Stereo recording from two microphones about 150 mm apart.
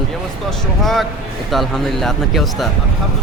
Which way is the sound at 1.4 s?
Centre (ahead or behind).